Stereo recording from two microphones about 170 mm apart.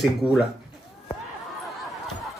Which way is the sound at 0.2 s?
5° right (ahead or behind).